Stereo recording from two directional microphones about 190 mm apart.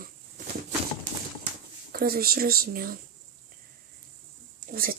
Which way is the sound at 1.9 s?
50° right (ahead or behind).